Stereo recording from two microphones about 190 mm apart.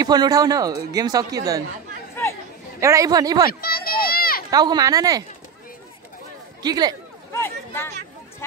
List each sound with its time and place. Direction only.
0.0 s a man's voice: 20° right (ahead or behind)
2.8 s a man's voice: 15° right (ahead or behind)
3.6 s a sound: 55° left (ahead or behind)
4.5 s a man's voice: 20° right (ahead or behind)
6.6 s a man's voice: 20° right (ahead or behind)
7.3 s a sound: 15° left (ahead or behind)